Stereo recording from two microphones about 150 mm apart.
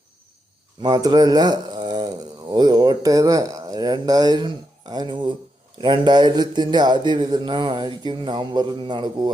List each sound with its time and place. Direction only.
0.8 s speech: 25° right (ahead or behind)